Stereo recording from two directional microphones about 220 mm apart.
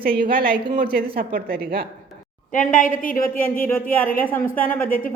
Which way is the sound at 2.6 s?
35° left (ahead or behind).